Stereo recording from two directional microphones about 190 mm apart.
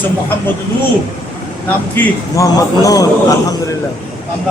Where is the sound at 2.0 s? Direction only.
20° left (ahead or behind).